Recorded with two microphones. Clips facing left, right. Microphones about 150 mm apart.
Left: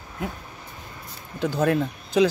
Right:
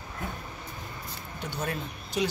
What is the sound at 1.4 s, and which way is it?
Speech, 90° left.